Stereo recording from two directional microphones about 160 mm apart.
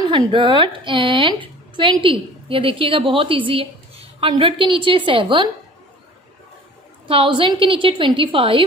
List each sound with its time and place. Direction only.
0.1 s a woman's voice: 30° right (ahead or behind)
7.1 s a woman's voice: 35° right (ahead or behind)